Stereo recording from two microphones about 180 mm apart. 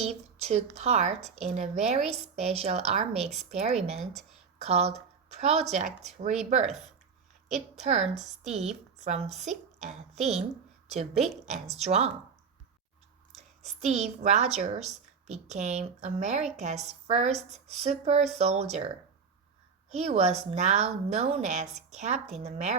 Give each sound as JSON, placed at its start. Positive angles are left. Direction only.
{"t": 0.0, "sound": "a woman's voice", "side_deg": -35}
{"t": 6.7, "sound": "speech", "side_deg": 0}
{"t": 7.4, "sound": "a woman's voice", "side_deg": -40}
{"t": 13.3, "sound": "a woman's voice", "side_deg": -40}
{"t": 19.9, "sound": "a woman's voice", "side_deg": -35}